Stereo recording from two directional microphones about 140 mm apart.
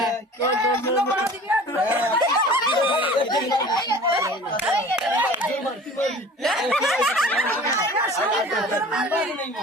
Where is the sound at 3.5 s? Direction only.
30° left (ahead or behind).